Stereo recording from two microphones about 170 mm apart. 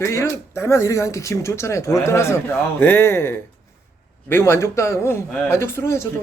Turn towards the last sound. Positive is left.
turn(degrees=15)  # may be behind; listen again after turning